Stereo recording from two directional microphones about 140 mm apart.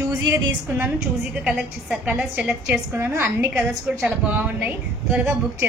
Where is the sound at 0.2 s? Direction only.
15° right (ahead or behind).